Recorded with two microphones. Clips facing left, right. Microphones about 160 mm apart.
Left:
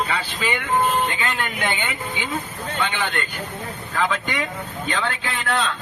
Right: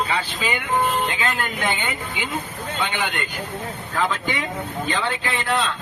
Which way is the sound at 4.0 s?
Centre (ahead or behind).